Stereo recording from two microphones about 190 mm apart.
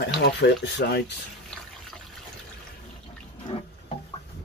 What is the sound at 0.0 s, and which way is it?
Speech, 65° left (ahead or behind).